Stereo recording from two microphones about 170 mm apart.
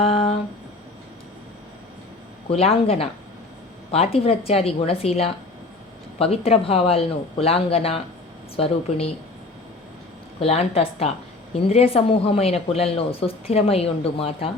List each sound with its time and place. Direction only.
0.0 s a sound: 35° left (ahead or behind)
2.5 s a woman's voice: 35° left (ahead or behind)
10.4 s a woman's voice: 35° left (ahead or behind)